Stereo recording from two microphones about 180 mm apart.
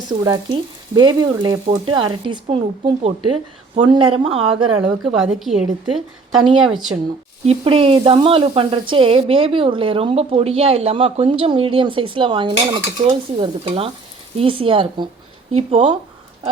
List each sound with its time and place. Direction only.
0.1 s frying: 25° right (ahead or behind)
5.0 s a woman's voice: centre (ahead or behind)
6.5 s frying: 25° right (ahead or behind)
7.4 s a woman's voice: 35° right (ahead or behind)
14.3 s frying: 30° right (ahead or behind)